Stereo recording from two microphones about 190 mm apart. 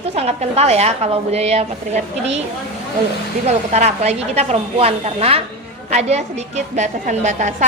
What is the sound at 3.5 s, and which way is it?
A woman's voice, 35° right (ahead or behind).